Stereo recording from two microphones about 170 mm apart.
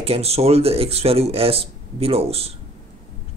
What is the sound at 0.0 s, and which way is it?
Speech, 35° right (ahead or behind).